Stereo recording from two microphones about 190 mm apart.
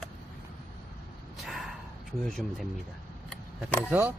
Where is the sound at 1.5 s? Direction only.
Centre (ahead or behind).